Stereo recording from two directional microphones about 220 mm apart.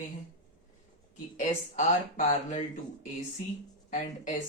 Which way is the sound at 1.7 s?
35° left (ahead or behind).